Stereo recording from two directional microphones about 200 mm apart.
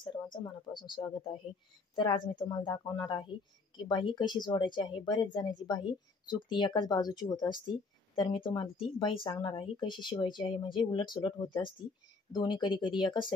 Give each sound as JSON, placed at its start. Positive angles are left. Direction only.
{"t": 0.0, "sound": "a woman's voice", "side_deg": 20}